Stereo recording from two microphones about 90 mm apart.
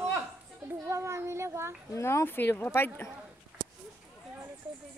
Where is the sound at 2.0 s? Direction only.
30° left (ahead or behind).